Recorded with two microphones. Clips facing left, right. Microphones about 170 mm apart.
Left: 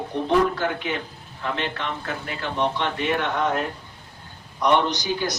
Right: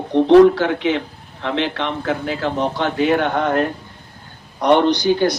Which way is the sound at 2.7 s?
75° right (ahead or behind).